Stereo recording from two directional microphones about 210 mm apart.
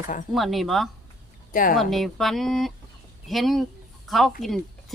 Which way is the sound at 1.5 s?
40° left (ahead or behind).